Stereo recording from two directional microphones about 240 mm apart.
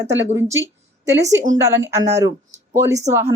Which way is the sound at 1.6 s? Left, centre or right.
Centre.